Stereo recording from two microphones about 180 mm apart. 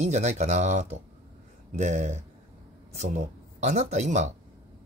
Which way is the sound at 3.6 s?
40° right (ahead or behind).